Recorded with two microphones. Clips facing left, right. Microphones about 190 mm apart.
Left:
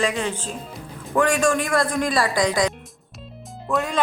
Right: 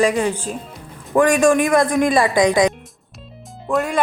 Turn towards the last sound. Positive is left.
turn(degrees=0)  # may be behind; listen again after turning